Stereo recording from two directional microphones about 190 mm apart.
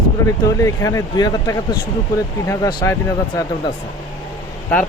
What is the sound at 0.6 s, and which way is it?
Speech, 15° left (ahead or behind).